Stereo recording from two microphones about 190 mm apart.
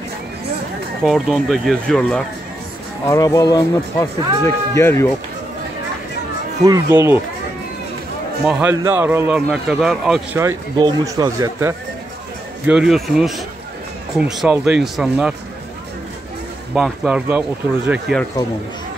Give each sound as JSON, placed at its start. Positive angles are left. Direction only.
{"t": 1.0, "sound": "speech", "side_deg": 0}
{"t": 3.1, "sound": "speech", "side_deg": 20}
{"t": 6.6, "sound": "speech", "side_deg": -15}
{"t": 8.5, "sound": "speech", "side_deg": -10}
{"t": 10.4, "sound": "speech", "side_deg": -20}
{"t": 12.6, "sound": "speech", "side_deg": -5}
{"t": 16.7, "sound": "speech", "side_deg": 0}